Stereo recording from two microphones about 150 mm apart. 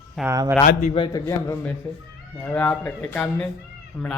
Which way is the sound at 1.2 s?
15° left (ahead or behind).